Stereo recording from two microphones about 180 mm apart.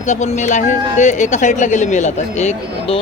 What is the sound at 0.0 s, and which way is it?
A man's voice, 40° left (ahead or behind).